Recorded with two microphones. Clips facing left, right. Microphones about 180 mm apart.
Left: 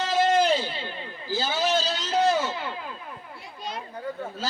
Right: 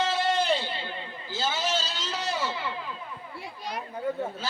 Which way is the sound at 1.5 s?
45° left (ahead or behind).